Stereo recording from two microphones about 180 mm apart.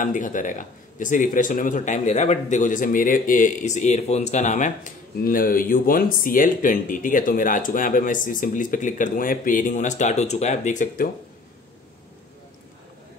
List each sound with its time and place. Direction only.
0.0 s speech: 45° left (ahead or behind)